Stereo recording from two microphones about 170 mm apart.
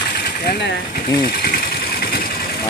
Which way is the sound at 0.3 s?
70° left (ahead or behind).